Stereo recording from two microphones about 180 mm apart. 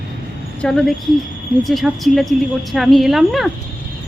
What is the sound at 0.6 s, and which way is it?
A woman's voice, 5° left (ahead or behind).